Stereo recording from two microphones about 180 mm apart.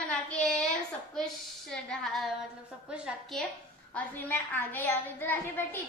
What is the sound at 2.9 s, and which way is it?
Speech, 5° right (ahead or behind).